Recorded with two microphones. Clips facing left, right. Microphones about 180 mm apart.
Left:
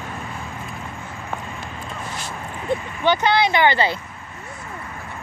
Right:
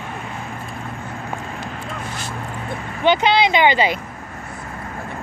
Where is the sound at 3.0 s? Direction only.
20° right (ahead or behind).